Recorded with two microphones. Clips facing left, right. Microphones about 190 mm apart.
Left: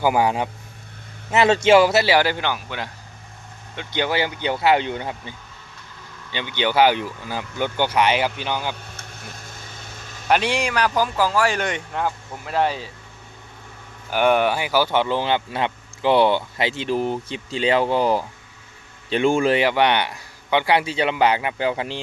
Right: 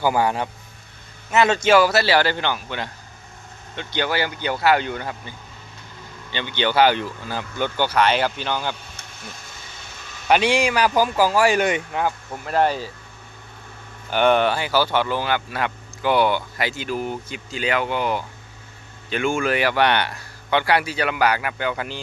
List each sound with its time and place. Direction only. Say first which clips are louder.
0.0 s speech: left 1 dB; 15° left (ahead or behind)
1.3 s speech: left 2 dB; 30° left (ahead or behind); by 2.9 s 5° left (ahead or behind)
3.8 s speech: left 1 dB; 20° left (ahead or behind)
6.3 s speech: even; 10° left (ahead or behind)
9.0 s vehicle: left 1 dB; 55° left (ahead or behind)
10.2 s a man's voice: right 2 dB; centre (ahead or behind)
14.1 s speech: even; 10° left (ahead or behind); by 22.0 s 30° left (ahead or behind)